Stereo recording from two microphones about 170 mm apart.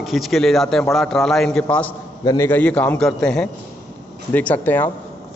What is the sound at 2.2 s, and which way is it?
Speech, 25° left (ahead or behind).